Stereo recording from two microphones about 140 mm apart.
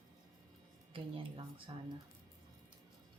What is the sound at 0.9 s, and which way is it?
Speech, 40° right (ahead or behind).